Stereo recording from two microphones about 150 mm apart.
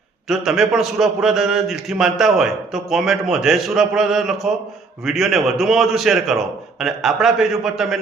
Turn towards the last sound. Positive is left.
turn(degrees=0)  # may be behind; listen again after turning